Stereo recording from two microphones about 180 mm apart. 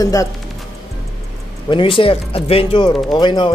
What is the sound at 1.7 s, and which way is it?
Speech, 30° left (ahead or behind).